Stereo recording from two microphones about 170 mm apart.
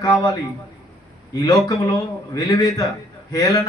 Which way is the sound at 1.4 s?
25° left (ahead or behind).